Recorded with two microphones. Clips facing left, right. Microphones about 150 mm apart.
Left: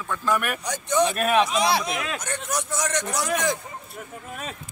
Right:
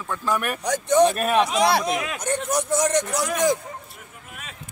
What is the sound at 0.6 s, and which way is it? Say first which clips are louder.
Speech: right 5 dB; 45° right (ahead or behind).